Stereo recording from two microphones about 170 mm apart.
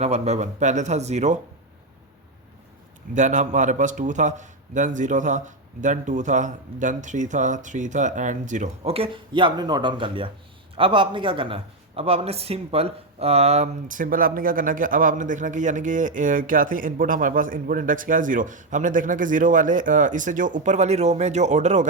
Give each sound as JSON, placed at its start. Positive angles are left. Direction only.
{"t": 0.0, "sound": "speech", "side_deg": -40}
{"t": 3.2, "sound": "speech", "side_deg": -45}